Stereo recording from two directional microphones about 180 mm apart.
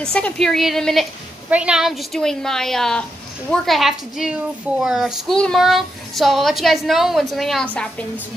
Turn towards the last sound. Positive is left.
turn(degrees=0)  # may be behind; listen again after turning